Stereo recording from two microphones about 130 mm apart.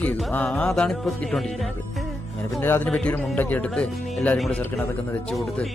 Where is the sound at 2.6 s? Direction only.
15° left (ahead or behind).